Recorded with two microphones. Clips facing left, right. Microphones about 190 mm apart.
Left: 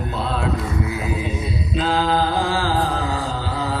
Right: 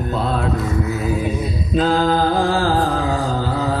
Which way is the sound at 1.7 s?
45° right (ahead or behind).